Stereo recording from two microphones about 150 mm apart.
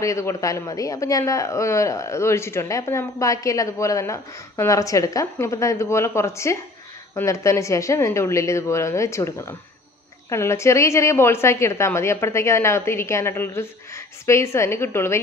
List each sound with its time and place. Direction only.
0.0 s a man's voice: 20° left (ahead or behind)